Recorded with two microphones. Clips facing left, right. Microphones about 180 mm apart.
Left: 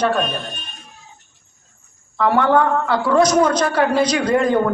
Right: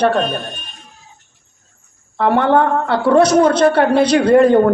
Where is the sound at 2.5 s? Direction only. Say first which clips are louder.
Right 2 dB; 30° right (ahead or behind).